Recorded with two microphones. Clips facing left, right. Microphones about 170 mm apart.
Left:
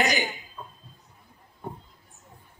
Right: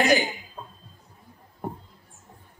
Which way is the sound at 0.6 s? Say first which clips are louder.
Right 1 dB; 50° right (ahead or behind).